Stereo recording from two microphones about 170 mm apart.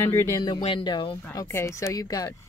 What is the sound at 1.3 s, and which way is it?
Speech, 15° left (ahead or behind).